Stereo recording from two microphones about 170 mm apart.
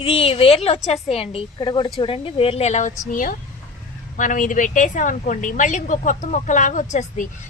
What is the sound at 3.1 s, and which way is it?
A woman's voice, 55° left (ahead or behind).